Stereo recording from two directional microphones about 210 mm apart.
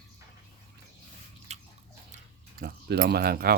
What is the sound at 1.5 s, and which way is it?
Bathtub, 30° right (ahead or behind).